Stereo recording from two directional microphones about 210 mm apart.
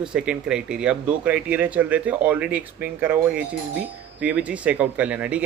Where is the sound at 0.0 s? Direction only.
5° right (ahead or behind).